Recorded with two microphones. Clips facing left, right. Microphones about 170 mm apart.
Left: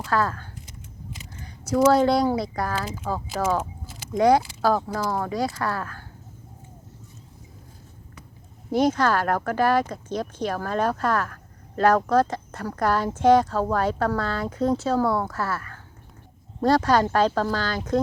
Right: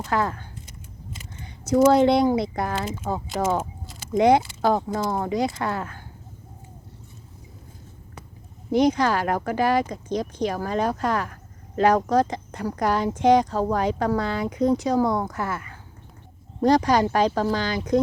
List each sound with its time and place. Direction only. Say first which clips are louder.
0.0 s speech: even; 20° right (ahead or behind)
1.5 s speech: right 2 dB; 20° right (ahead or behind)
8.7 s speech: right 1 dB; 15° right (ahead or behind)